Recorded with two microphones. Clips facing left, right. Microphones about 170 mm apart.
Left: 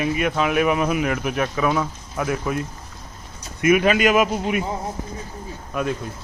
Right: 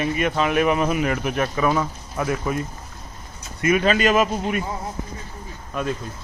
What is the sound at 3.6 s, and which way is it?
Speech, 15° left (ahead or behind).